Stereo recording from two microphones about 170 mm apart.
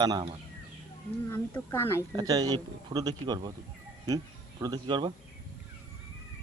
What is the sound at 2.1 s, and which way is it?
Speech, 20° right (ahead or behind).